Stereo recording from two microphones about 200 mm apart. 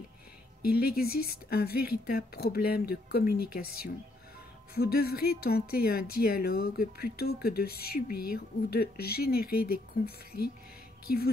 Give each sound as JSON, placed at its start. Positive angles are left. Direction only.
{"t": 0.6, "sound": "speech", "side_deg": 50}